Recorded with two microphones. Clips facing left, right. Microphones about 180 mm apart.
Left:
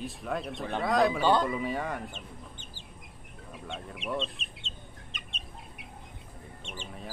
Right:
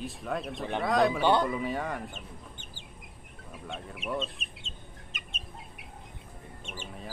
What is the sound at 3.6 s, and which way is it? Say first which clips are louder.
Speech: even; centre (ahead or behind).